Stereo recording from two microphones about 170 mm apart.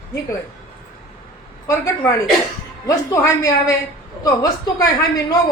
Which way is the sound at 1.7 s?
15° left (ahead or behind).